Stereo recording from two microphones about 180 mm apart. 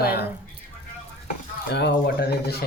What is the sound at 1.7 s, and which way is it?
Speech, 65° left (ahead or behind).